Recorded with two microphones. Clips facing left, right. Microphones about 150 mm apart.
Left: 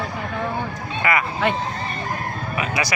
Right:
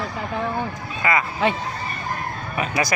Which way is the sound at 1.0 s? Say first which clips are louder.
Even; 25° right (ahead or behind).